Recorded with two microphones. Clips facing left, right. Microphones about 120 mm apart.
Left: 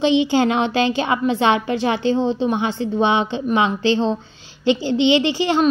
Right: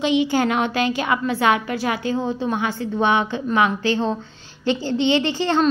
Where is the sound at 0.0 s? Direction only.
25° left (ahead or behind).